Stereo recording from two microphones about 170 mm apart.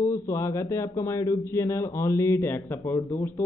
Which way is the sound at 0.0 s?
20° left (ahead or behind).